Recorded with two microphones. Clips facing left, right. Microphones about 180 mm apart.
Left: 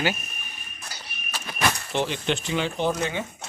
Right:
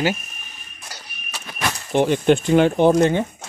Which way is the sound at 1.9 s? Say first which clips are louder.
Right 10 dB; 50° right (ahead or behind).